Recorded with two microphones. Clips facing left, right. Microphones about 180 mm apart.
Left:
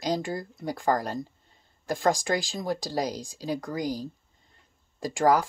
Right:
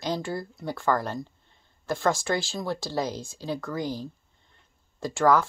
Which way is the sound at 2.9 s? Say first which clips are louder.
Right 1 dB; 40° left (ahead or behind).